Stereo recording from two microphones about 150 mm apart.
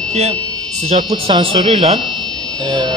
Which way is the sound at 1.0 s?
35° right (ahead or behind).